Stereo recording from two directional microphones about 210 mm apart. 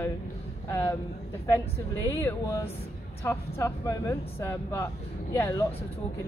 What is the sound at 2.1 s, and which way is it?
Speech, 10° left (ahead or behind).